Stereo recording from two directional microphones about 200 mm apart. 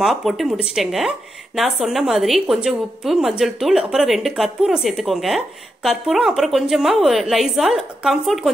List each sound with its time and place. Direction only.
0.0 s speech: centre (ahead or behind)